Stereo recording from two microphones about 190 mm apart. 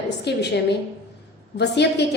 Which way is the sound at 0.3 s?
60° left (ahead or behind).